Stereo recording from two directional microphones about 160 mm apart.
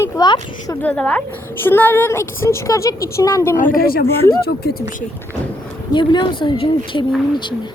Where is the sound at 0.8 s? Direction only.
10° left (ahead or behind).